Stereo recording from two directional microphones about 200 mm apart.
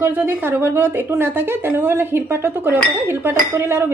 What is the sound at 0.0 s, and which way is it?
A woman's voice, 10° right (ahead or behind).